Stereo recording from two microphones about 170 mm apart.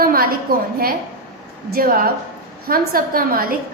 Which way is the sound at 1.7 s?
60° right (ahead or behind).